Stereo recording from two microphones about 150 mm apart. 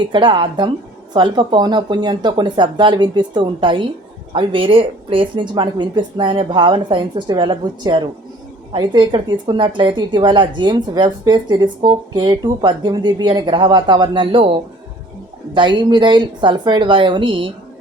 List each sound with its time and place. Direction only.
0.1 s a woman's voice: 30° right (ahead or behind)
15.5 s a woman's voice: 30° right (ahead or behind)